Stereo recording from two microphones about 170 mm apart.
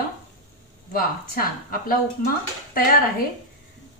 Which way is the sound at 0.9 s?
60° left (ahead or behind).